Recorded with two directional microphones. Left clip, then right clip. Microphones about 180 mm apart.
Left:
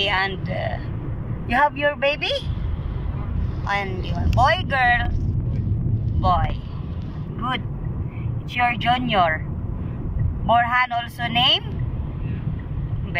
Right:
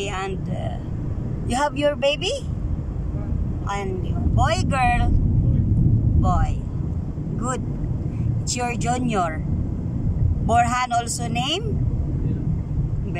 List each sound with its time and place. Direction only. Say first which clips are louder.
0.0 s speech: left 6 dB; 10° right (ahead or behind)
3.6 s a woman's voice: left 3 dB; 15° right (ahead or behind)
8.7 s speech: left 4 dB; 20° right (ahead or behind)
10.4 s speech: left 2 dB; 15° right (ahead or behind)